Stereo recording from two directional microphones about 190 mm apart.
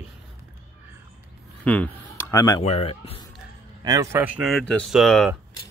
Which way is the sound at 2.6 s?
30° left (ahead or behind).